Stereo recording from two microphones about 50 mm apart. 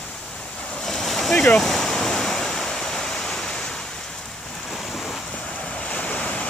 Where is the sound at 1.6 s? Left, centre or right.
Centre.